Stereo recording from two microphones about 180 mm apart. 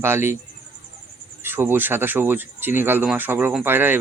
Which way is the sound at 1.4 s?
10° right (ahead or behind).